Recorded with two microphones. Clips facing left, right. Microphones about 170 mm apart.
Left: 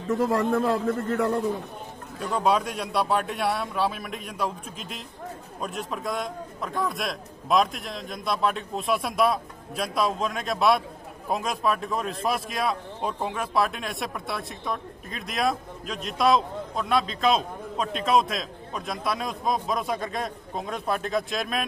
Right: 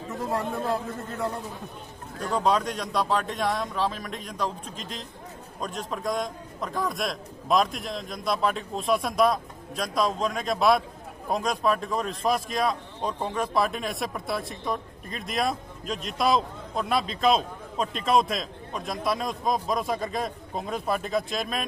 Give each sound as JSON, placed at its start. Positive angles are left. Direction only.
{"t": 0.2, "sound": "a man's voice", "side_deg": 85}
{"t": 2.1, "sound": "a man's voice", "side_deg": 5}